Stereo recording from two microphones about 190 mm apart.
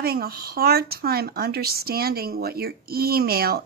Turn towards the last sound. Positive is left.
turn(degrees=-55)  # may be behind; listen again after turning